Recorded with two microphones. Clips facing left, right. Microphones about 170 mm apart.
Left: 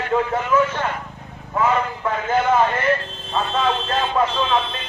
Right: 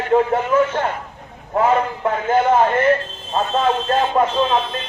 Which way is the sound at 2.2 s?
30° right (ahead or behind).